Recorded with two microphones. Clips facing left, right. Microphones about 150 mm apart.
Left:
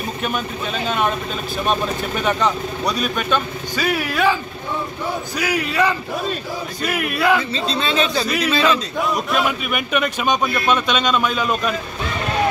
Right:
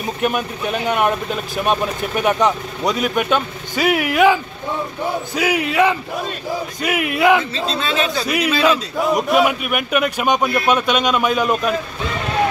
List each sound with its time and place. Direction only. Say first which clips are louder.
0.2 s a man's voice: right 6 dB; 15° right (ahead or behind)
7.5 s speech: even; centre (ahead or behind)